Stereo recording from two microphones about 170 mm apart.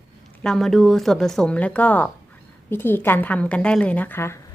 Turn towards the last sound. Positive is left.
turn(degrees=15)  # may be behind; listen again after turning